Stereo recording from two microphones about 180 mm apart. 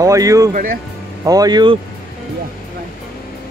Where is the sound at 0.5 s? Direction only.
50° right (ahead or behind).